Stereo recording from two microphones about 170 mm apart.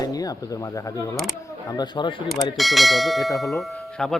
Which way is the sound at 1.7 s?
25° left (ahead or behind).